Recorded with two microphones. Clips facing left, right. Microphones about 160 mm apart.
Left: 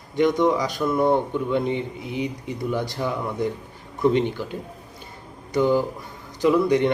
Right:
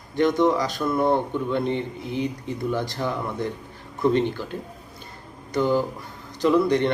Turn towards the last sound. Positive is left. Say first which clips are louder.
# left 2 dB
turn(degrees=15)  # may be behind; listen again after turning